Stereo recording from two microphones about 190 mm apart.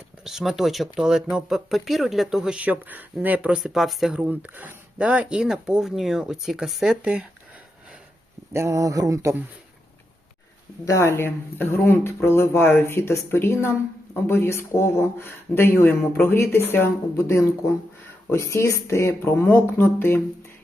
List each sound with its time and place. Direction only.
0.3 s speech: centre (ahead or behind)
8.5 s speech: 15° right (ahead or behind)
10.8 s speech: 15° left (ahead or behind)